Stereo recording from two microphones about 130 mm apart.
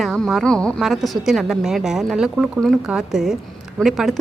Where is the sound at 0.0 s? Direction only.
Centre (ahead or behind).